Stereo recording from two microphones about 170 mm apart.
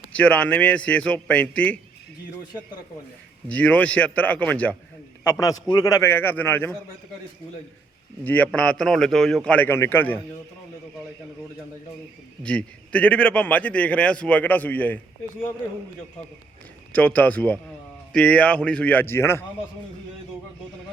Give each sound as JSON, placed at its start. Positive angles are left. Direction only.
{"t": 0.1, "sound": "a man's voice", "side_deg": 5}
{"t": 3.5, "sound": "a man's voice", "side_deg": 10}
{"t": 8.2, "sound": "a man's voice", "side_deg": 10}
{"t": 12.4, "sound": "a man's voice", "side_deg": 5}
{"t": 16.9, "sound": "a man's voice", "side_deg": 10}